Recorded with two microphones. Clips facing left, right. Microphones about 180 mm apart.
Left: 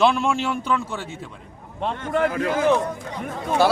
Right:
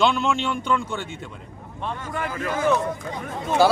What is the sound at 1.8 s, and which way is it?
Speech, 75° left (ahead or behind).